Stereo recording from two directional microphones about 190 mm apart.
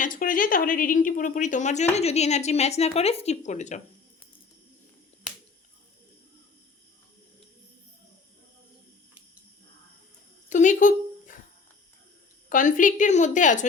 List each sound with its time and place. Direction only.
0.0 s a woman's voice: 45° left (ahead or behind)
10.5 s a sound: 40° left (ahead or behind)
12.5 s a woman's voice: 45° left (ahead or behind)